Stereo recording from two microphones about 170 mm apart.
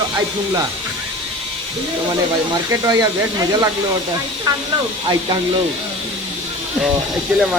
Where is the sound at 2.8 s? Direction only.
20° right (ahead or behind).